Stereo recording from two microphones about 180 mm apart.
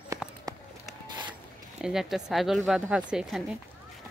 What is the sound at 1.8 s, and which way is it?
Speech, centre (ahead or behind).